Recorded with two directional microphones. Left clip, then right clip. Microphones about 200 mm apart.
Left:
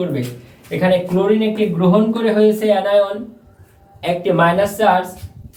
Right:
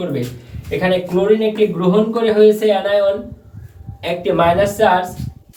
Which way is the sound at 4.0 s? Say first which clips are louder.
Left 1 dB; 20° left (ahead or behind).